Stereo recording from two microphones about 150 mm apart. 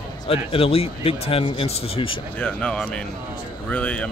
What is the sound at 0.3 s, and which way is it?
Speech, 40° left (ahead or behind).